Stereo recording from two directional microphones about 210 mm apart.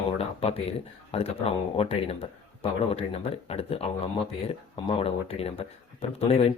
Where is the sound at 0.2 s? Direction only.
30° left (ahead or behind).